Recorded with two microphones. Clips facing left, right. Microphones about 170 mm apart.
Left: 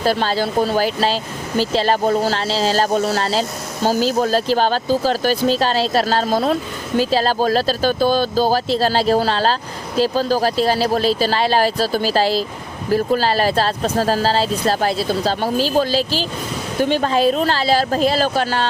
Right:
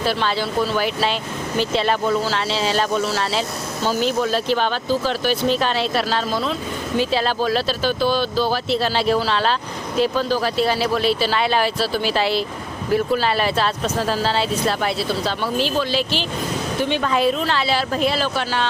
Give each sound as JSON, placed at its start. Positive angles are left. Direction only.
{"t": 0.0, "sound": "speech", "side_deg": 40}